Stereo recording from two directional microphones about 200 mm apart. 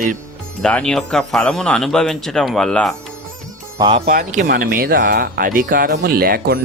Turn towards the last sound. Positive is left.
turn(degrees=-50)  # may be behind; listen again after turning